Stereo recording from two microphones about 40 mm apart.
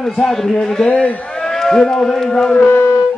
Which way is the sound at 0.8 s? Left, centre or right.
Left.